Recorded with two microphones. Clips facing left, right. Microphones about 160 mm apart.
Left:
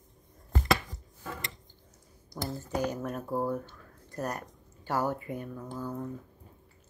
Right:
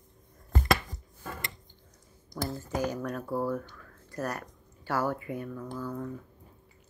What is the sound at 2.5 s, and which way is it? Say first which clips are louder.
Speech: left 1 dB; 20° left (ahead or behind).